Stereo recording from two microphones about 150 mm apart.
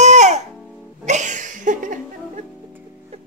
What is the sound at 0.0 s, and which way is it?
Music, 50° right (ahead or behind).